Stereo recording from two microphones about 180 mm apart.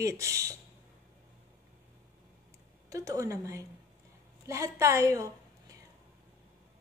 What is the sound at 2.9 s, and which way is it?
A woman's voice, 15° right (ahead or behind).